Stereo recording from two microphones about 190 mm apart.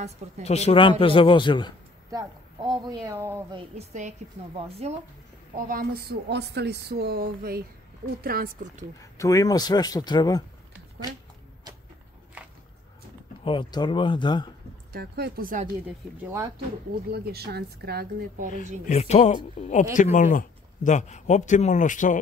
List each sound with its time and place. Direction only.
0.4 s a man's voice: 35° left (ahead or behind)
2.0 s speech: 20° right (ahead or behind)
3.5 s a woman's voice: 35° right (ahead or behind)
5.7 s speech: 50° right (ahead or behind)
9.2 s a man's voice: 15° left (ahead or behind)
13.4 s a man's voice: 25° left (ahead or behind)
14.9 s speech: 55° right (ahead or behind)
16.2 s speech: 10° right (ahead or behind)
17.1 s speech: 55° right (ahead or behind)
18.9 s speech: 35° left (ahead or behind)